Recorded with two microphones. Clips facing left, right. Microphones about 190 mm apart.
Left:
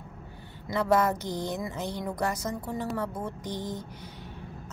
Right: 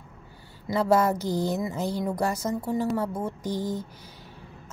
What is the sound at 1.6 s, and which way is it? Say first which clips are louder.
Speech: right 5 dB; 25° right (ahead or behind).